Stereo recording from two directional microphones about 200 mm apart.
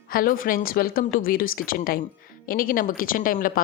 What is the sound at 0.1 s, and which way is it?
A woman's voice, 45° left (ahead or behind).